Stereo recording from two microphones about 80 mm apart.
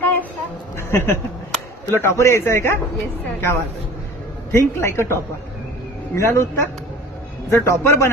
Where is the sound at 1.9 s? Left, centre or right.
Left.